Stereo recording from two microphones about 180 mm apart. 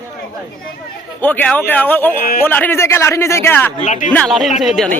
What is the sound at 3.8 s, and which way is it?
Speech, 40° left (ahead or behind).